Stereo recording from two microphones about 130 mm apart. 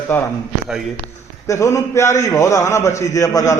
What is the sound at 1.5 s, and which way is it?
A man's voice, 20° left (ahead or behind).